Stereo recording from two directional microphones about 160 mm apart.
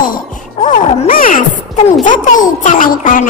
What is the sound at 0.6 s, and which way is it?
Music, 50° left (ahead or behind).